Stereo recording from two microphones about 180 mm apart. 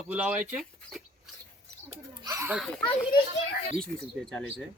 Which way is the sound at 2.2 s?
15° right (ahead or behind).